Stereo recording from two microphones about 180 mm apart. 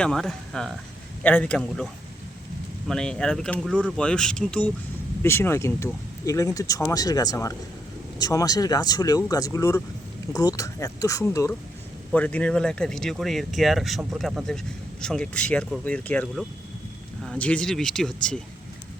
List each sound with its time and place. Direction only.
0.0 s speech: 5° left (ahead or behind)